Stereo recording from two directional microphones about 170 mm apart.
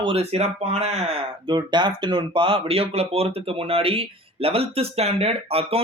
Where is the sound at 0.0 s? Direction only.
35° right (ahead or behind).